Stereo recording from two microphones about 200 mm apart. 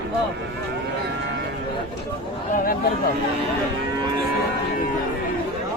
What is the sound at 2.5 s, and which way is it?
Speech, 45° left (ahead or behind).